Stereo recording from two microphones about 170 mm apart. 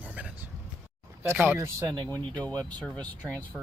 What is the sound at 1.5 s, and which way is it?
Speech, 20° right (ahead or behind).